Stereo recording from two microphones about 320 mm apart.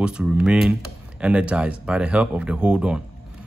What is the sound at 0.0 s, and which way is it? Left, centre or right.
Speech, centre.